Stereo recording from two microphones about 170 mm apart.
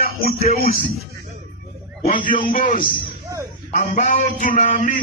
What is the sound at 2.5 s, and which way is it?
A man's voice, 50° left (ahead or behind).